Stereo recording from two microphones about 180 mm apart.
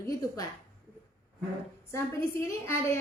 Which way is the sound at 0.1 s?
20° left (ahead or behind).